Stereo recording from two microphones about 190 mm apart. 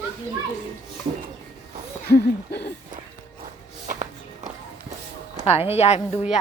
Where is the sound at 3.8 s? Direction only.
40° right (ahead or behind).